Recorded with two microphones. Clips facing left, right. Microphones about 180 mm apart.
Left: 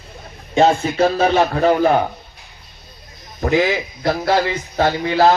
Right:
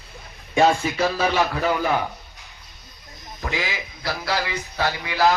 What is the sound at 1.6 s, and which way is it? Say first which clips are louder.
Speech: left 8 dB; 40° left (ahead or behind).